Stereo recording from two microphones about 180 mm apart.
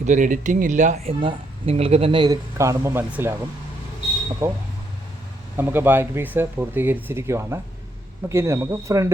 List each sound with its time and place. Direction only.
0.0 s speech: 45° right (ahead or behind); by 3.3 s 10° right (ahead or behind)
4.4 s speech: 15° right (ahead or behind)